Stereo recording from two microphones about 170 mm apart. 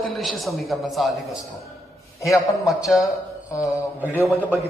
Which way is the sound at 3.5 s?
20° left (ahead or behind).